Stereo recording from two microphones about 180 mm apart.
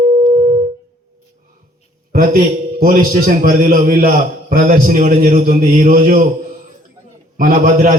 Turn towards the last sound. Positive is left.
turn(degrees=-50)  # may be behind; listen again after turning